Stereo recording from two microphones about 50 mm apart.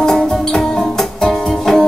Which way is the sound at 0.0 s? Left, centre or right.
Centre.